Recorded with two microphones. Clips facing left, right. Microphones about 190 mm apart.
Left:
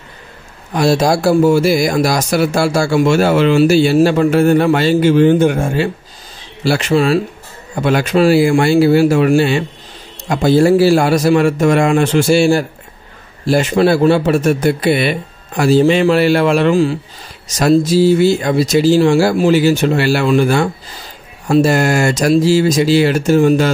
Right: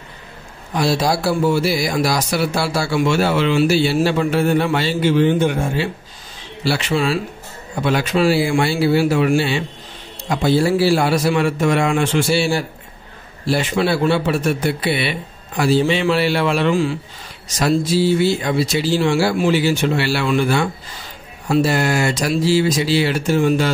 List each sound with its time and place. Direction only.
0.7 s speech: 45° left (ahead or behind)